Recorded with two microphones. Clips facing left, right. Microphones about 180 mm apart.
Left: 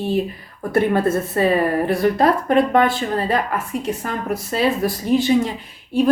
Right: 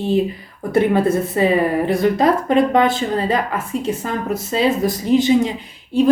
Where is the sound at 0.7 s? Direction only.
15° right (ahead or behind).